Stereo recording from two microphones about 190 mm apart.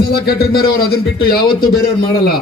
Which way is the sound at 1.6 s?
55° left (ahead or behind).